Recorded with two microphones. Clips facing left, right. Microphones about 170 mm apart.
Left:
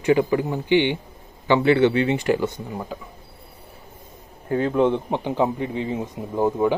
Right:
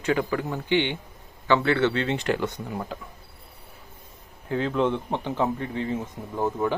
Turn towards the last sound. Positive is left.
turn(degrees=15)  # may be behind; listen again after turning